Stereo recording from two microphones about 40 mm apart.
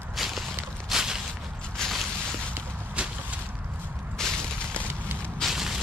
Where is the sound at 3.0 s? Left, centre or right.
Right.